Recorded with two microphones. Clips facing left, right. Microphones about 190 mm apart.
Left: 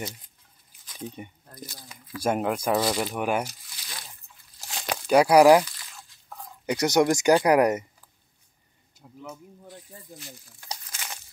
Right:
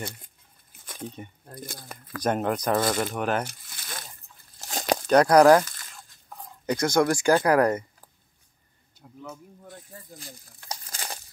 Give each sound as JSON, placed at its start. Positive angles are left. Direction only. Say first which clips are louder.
{"t": 0.0, "sound": "speech", "louder": "left 1 dB", "side_deg": -55}
{"t": 0.7, "sound": "a sound", "louder": "right 3 dB", "side_deg": -50}
{"t": 1.6, "sound": "speech", "louder": "right 3 dB", "side_deg": -50}
{"t": 2.2, "sound": "speech", "louder": "even", "side_deg": 5}
{"t": 3.4, "sound": "crumpling", "louder": "right 3 dB", "side_deg": -55}
{"t": 5.0, "sound": "speech", "louder": "even", "side_deg": 5}
{"t": 5.7, "sound": "a sound", "louder": "even", "side_deg": -50}
{"t": 6.6, "sound": "speech", "louder": "left 1 dB", "side_deg": 15}
{"t": 9.7, "sound": "speech", "louder": "right 1 dB", "side_deg": -45}
{"t": 10.9, "sound": "a sound", "louder": "right 3 dB", "side_deg": -35}